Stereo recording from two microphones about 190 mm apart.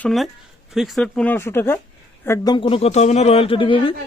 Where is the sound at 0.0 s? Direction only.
Centre (ahead or behind).